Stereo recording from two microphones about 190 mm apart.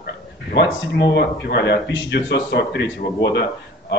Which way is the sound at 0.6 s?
60° left (ahead or behind).